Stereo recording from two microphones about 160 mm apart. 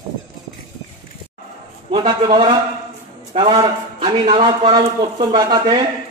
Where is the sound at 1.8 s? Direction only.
30° right (ahead or behind).